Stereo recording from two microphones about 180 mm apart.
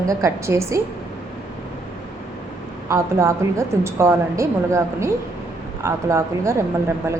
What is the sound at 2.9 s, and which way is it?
A woman's voice, 15° right (ahead or behind).